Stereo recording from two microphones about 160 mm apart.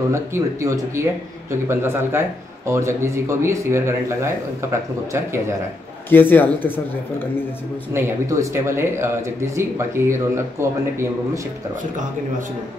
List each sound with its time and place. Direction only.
0.1 s speech: 20° right (ahead or behind)
6.0 s a man's voice: 10° left (ahead or behind)
7.9 s speech: 15° right (ahead or behind)